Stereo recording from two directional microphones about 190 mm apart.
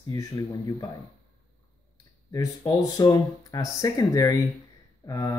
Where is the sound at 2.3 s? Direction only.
20° left (ahead or behind).